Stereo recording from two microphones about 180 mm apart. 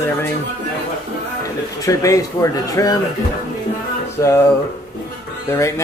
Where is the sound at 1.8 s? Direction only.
20° left (ahead or behind).